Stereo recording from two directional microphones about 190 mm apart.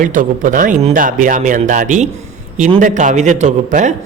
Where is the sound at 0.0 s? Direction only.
45° right (ahead or behind).